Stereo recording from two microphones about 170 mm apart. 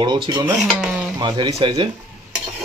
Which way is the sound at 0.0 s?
25° right (ahead or behind).